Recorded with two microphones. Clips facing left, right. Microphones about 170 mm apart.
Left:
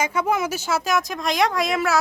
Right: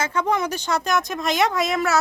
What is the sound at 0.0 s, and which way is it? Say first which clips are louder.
A woman's voice: even; 10° left (ahead or behind).